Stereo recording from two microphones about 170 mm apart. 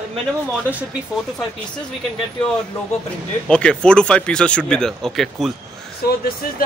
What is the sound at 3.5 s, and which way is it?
Speech, 5° left (ahead or behind).